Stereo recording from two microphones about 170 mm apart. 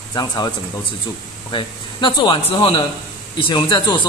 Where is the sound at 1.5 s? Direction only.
30° left (ahead or behind).